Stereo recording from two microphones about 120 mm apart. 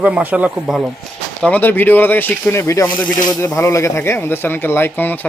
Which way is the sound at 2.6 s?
25° left (ahead or behind).